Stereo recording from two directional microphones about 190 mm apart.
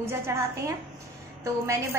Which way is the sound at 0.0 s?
15° right (ahead or behind).